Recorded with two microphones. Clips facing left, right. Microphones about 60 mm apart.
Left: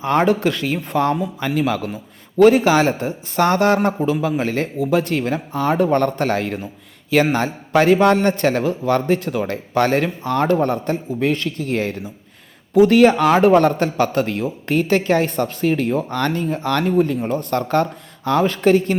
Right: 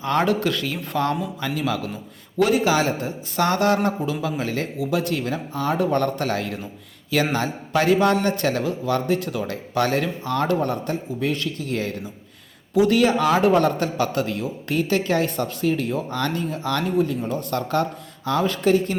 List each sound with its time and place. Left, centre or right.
0.0 s a man's voice: left
15.6 s a man's voice: left